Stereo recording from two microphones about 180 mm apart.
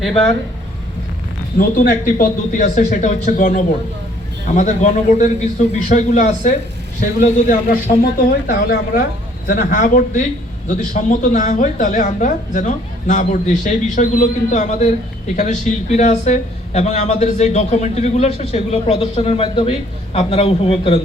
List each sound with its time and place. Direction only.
0.0 s speech: centre (ahead or behind)
1.5 s a woman's voice: 50° left (ahead or behind); by 21.0 s 30° left (ahead or behind)